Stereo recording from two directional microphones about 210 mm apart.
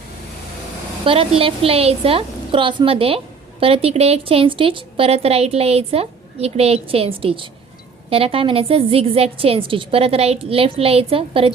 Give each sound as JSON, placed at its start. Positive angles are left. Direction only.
{"t": 1.0, "sound": "a woman's voice", "side_deg": -25}